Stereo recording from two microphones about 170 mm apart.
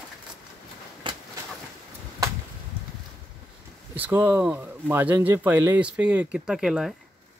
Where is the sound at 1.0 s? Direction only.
30° right (ahead or behind).